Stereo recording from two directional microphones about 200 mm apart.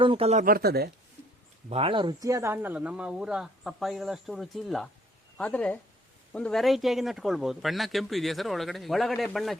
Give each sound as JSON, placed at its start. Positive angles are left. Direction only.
{"t": 0.0, "sound": "speech", "side_deg": -30}
{"t": 1.7, "sound": "speech", "side_deg": -25}